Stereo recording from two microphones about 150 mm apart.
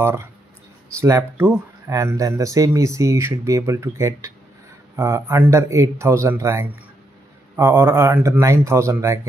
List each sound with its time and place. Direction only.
0.0 s speech: 15° right (ahead or behind)